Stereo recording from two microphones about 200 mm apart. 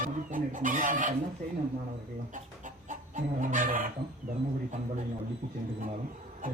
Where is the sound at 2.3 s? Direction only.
40° right (ahead or behind).